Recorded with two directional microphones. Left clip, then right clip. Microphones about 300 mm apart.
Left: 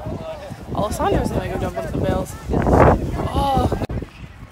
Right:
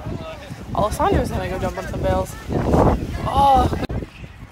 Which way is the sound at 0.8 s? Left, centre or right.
Centre.